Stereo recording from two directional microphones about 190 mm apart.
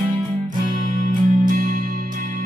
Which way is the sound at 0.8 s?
45° right (ahead or behind).